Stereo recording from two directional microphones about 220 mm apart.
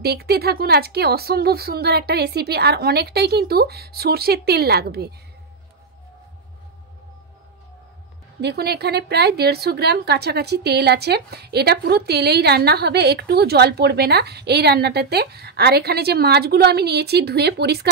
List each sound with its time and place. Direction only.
0.0 s a woman's voice: 45° right (ahead or behind)
8.4 s a woman's voice: 50° right (ahead or behind)